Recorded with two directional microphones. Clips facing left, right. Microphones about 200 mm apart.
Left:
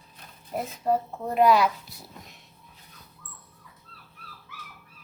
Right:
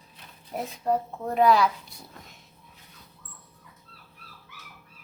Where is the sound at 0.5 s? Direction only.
Centre (ahead or behind).